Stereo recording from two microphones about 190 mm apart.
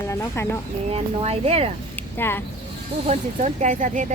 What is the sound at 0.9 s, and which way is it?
Speech, 30° right (ahead or behind).